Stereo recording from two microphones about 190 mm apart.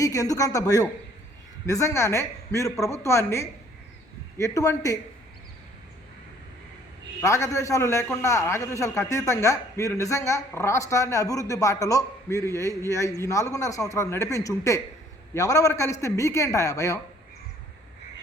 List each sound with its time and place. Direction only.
0.0 s a man's voice: 15° left (ahead or behind)
7.2 s a man's voice: 15° left (ahead or behind)